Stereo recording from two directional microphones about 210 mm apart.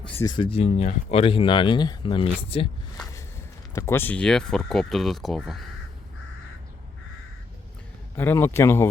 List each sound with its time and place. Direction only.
0.0 s speech: 10° left (ahead or behind); by 2.6 s 25° left (ahead or behind)
3.7 s speech: 15° left (ahead or behind)
8.1 s speech: 10° left (ahead or behind)